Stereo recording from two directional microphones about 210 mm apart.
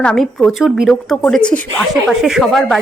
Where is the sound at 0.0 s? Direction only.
5° left (ahead or behind).